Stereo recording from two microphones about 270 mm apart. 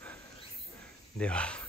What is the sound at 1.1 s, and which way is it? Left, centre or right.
Speech, centre.